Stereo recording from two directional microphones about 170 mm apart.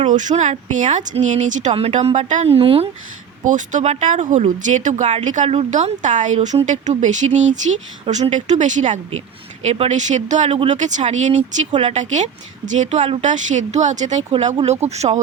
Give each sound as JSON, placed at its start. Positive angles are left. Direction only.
{"t": 0.1, "sound": "speech", "side_deg": -45}
{"t": 3.4, "sound": "speech", "side_deg": -50}